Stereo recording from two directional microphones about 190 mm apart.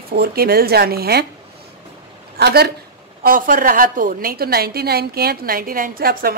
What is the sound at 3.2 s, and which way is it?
A woman's voice, 45° right (ahead or behind).